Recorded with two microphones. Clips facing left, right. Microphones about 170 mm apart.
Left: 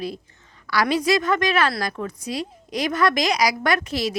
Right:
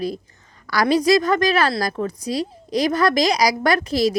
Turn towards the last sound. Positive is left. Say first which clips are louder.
# right 4 dB
turn(degrees=-35)  # may be behind; listen again after turning